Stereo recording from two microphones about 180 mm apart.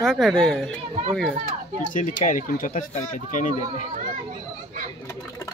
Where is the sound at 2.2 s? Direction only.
45° left (ahead or behind).